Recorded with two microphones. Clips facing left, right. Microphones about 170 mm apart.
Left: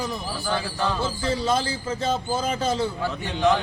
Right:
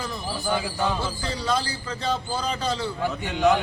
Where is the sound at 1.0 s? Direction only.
25° left (ahead or behind).